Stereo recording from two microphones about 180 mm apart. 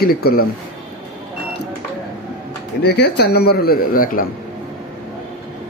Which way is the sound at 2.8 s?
65° left (ahead or behind).